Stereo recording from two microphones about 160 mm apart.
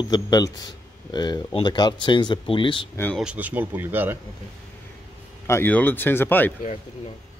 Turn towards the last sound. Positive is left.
turn(degrees=10)  # may be behind; listen again after turning